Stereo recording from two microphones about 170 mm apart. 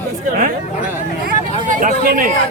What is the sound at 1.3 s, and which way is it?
Speech, 55° right (ahead or behind).